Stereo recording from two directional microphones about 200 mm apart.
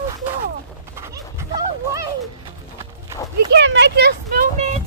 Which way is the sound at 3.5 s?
60° right (ahead or behind).